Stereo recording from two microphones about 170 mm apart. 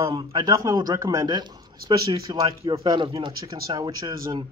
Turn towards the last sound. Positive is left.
turn(degrees=-25)  # may be behind; listen again after turning